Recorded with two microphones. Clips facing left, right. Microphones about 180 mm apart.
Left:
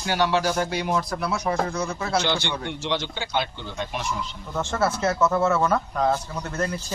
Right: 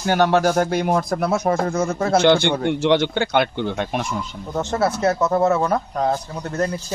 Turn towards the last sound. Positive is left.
turn(degrees=-35)  # may be behind; listen again after turning